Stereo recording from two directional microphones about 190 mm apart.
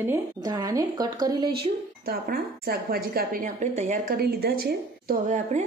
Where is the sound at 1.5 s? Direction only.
55° right (ahead or behind).